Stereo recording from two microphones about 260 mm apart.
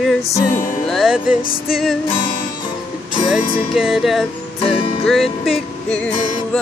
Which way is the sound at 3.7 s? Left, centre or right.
Centre.